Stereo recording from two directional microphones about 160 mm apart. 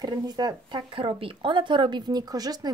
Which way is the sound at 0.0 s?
25° right (ahead or behind).